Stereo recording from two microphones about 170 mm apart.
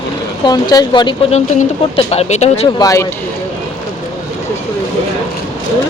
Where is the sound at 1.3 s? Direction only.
40° left (ahead or behind).